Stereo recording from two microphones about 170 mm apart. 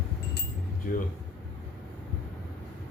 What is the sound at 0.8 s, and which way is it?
Speech, 55° left (ahead or behind).